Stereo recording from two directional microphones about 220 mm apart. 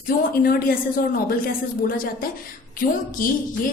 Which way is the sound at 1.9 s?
40° left (ahead or behind).